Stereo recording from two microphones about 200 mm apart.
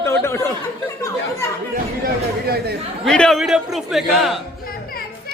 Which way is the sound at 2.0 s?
50° right (ahead or behind).